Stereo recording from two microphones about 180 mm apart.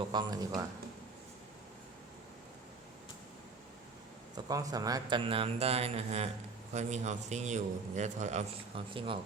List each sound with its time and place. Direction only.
0.1 s a man's voice: 20° right (ahead or behind)
4.4 s speech: 20° right (ahead or behind); by 8.4 s 40° right (ahead or behind)
8.9 s a man's voice: 30° right (ahead or behind)